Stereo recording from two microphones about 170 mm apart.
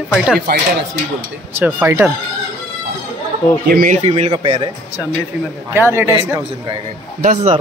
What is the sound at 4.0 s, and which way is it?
Speech, 30° right (ahead or behind).